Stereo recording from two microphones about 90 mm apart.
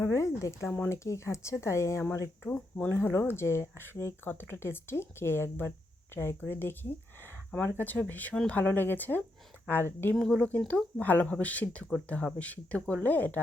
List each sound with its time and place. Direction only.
0.0 s speech: 35° left (ahead or behind)
2.6 s speech: 10° left (ahead or behind)
2.9 s speech: 30° left (ahead or behind)
10.2 s speech: 5° left (ahead or behind)